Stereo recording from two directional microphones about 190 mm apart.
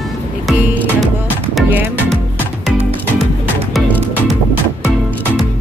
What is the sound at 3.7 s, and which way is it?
Music, centre (ahead or behind).